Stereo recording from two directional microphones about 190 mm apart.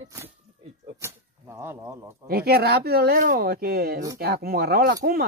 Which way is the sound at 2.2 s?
55° right (ahead or behind).